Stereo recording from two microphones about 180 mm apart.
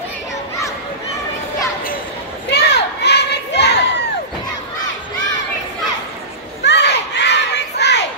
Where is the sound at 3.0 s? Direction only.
70° left (ahead or behind).